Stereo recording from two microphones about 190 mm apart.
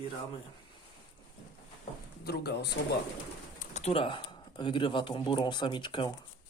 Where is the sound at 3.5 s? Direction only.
35° left (ahead or behind).